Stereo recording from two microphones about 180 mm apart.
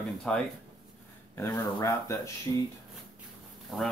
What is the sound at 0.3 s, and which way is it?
Speech, 5° left (ahead or behind).